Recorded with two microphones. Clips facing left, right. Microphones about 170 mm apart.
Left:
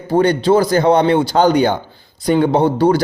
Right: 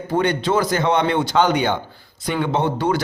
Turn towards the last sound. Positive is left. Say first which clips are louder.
# left 7 dB
turn(degrees=35)  # may be behind; listen again after turning